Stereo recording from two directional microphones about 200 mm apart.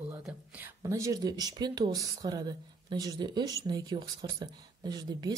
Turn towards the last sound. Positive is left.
turn(degrees=-20)  # may be behind; listen again after turning